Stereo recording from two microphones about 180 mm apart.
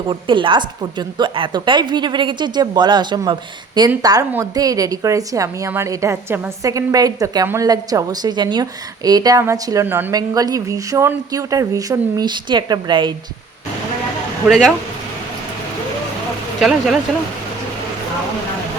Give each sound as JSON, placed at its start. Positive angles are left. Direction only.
{"t": 0.1, "sound": "a woman's voice", "side_deg": -25}
{"t": 14.4, "sound": "speech", "side_deg": 0}
{"t": 16.6, "sound": "speech", "side_deg": 0}